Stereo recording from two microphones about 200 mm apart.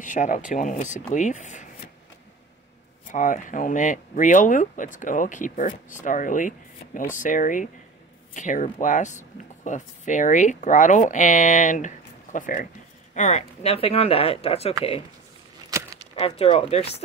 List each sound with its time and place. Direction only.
0.0 s speech: 40° left (ahead or behind)
3.1 s speech: 40° left (ahead or behind)
15.7 s a sound: 15° right (ahead or behind)
16.2 s speech: 30° left (ahead or behind)